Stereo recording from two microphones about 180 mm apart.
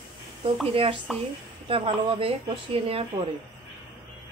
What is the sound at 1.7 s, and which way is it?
Speech, 30° right (ahead or behind).